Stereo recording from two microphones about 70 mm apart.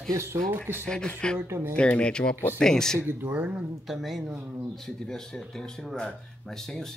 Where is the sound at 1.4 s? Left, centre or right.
Right.